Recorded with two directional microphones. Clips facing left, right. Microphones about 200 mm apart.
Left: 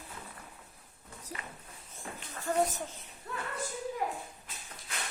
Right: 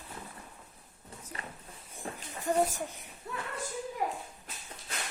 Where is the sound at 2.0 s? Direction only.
15° right (ahead or behind).